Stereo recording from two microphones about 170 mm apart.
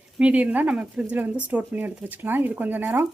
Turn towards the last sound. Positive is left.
turn(degrees=-10)  # may be behind; listen again after turning